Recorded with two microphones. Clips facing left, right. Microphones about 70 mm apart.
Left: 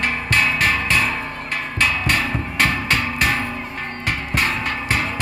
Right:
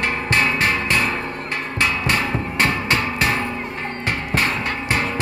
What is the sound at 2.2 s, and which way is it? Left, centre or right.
Music, right.